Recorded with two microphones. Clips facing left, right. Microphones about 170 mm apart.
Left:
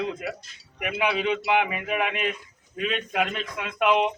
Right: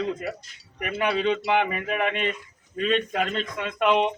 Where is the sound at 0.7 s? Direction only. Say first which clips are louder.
Right 1 dB; 10° left (ahead or behind).